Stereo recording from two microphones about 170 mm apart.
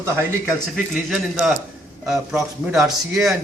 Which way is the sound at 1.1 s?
5° right (ahead or behind).